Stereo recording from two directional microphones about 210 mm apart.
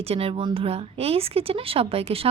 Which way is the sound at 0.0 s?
30° right (ahead or behind).